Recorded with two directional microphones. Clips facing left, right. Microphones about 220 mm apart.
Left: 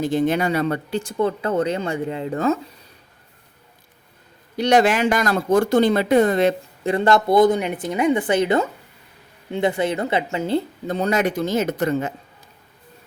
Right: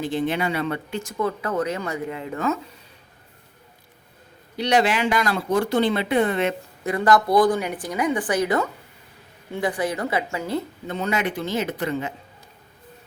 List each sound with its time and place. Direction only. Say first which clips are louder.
0.0 s speech: left 4 dB; 45° left (ahead or behind)
4.5 s a woman's voice: left 4 dB; 45° left (ahead or behind)